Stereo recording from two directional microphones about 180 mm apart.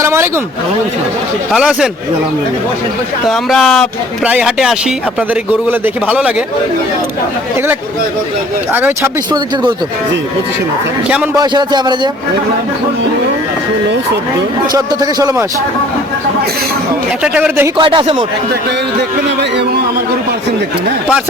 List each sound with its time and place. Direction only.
0.0 s vehicle: 15° right (ahead or behind)
1.5 s speech: 5° right (ahead or behind)
3.2 s a man's voice: centre (ahead or behind)
8.7 s a man's voice: 10° right (ahead or behind)
11.3 s speech: 25° right (ahead or behind)
14.7 s speech: 20° right (ahead or behind)
17.2 s a man's voice: 5° right (ahead or behind)
17.7 s speech: 30° right (ahead or behind)